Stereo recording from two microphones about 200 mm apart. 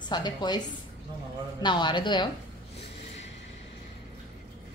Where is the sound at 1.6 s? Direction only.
20° left (ahead or behind).